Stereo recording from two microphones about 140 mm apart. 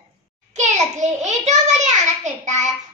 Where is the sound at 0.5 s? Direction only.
55° right (ahead or behind).